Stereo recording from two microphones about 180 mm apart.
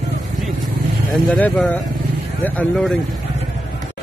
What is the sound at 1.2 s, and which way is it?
Speech, 5° left (ahead or behind).